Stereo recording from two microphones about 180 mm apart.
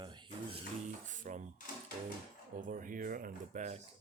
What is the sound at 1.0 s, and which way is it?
Speech, 45° right (ahead or behind).